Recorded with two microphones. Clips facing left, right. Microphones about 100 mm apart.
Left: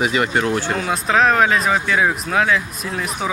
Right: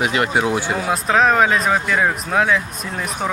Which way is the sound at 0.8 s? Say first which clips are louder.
Right 1 dB; centre (ahead or behind).